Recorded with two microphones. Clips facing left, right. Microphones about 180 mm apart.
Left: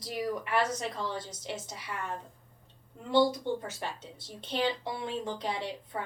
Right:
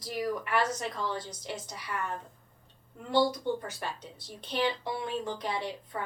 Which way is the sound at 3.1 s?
25° left (ahead or behind).